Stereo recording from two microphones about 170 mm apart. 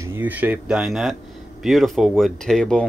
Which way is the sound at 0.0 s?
10° right (ahead or behind).